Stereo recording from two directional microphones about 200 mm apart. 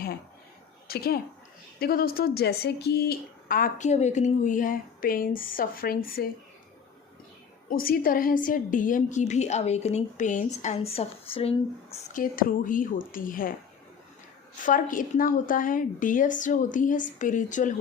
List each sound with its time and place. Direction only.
0.9 s speech: 50° left (ahead or behind)
7.7 s a woman's voice: 45° left (ahead or behind); by 11.5 s 30° left (ahead or behind)
12.1 s speech: 45° left (ahead or behind)
14.6 s a woman's voice: 40° left (ahead or behind)